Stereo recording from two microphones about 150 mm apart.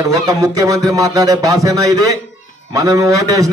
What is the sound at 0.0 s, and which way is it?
A man's voice, 25° right (ahead or behind).